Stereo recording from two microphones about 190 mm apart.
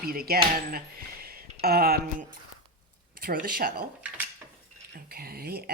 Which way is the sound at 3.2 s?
50° right (ahead or behind).